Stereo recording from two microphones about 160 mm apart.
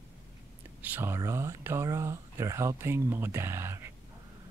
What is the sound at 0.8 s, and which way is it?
Speech, 15° right (ahead or behind).